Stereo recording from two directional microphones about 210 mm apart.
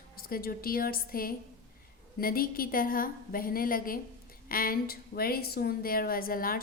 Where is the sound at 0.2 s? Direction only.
45° left (ahead or behind).